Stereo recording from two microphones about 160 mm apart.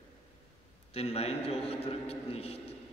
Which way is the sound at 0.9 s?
40° left (ahead or behind).